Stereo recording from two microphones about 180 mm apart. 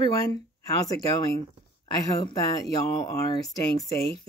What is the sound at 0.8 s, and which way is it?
Speech, 20° left (ahead or behind).